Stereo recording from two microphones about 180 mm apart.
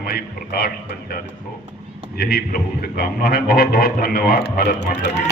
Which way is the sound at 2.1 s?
60° left (ahead or behind).